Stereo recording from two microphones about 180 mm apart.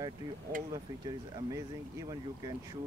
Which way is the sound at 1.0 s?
20° right (ahead or behind).